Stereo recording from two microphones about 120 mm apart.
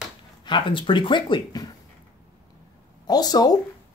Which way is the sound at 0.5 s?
40° left (ahead or behind).